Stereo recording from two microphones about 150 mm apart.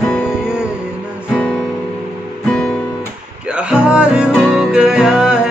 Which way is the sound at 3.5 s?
5° right (ahead or behind).